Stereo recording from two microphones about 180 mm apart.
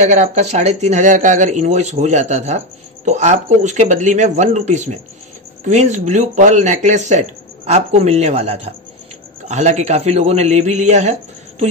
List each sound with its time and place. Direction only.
0.0 s speech: 40° right (ahead or behind)